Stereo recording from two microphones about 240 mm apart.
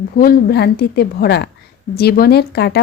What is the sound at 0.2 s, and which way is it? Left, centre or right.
A woman's voice, left.